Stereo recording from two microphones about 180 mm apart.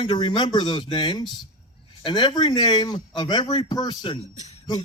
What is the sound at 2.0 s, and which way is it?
A man's voice, 25° left (ahead or behind).